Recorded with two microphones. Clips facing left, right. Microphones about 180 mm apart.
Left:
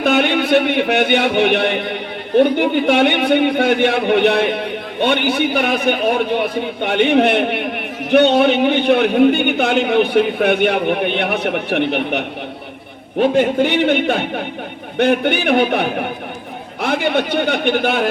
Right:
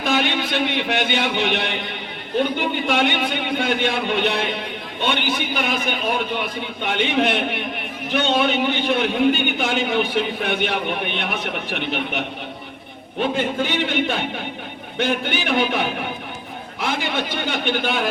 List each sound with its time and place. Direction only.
0.0 s a man's voice: 60° left (ahead or behind)
13.6 s a man's voice: 60° left (ahead or behind)